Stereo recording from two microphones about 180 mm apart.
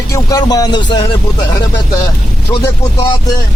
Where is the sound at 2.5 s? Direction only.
25° left (ahead or behind).